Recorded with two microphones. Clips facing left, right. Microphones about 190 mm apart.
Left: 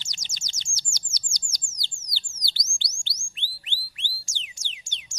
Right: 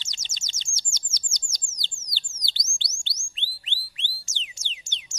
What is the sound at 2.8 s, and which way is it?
Music, 25° right (ahead or behind).